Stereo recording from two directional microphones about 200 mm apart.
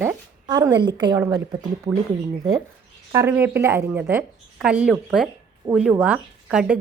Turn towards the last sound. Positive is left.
turn(degrees=-5)  # may be behind; listen again after turning